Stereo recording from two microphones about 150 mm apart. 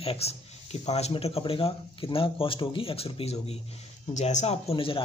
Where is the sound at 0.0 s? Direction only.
40° left (ahead or behind).